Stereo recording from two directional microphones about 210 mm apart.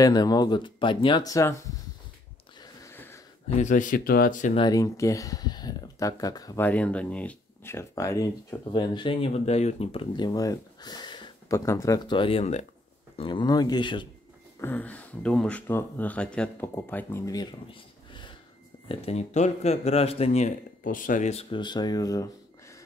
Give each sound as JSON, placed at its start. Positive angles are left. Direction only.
{"t": 0.0, "sound": "speech", "side_deg": 20}
{"t": 2.6, "sound": "a sound", "side_deg": 10}
{"t": 3.5, "sound": "speech", "side_deg": 35}
{"t": 4.6, "sound": "speech", "side_deg": 15}
{"t": 14.6, "sound": "speech", "side_deg": 10}